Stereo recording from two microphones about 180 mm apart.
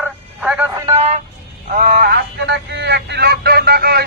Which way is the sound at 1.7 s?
50° right (ahead or behind).